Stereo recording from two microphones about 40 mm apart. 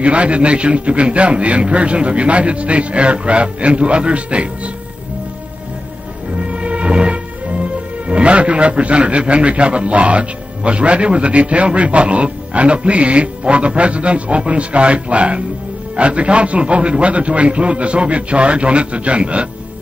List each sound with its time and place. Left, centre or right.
0.0 s a man's voice: right
6.4 s music: right
8.1 s a man's voice: right